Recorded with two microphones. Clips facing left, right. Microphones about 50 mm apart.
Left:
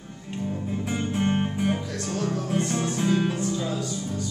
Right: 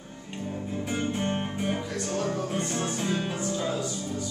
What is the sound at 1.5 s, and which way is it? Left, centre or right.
Music, centre.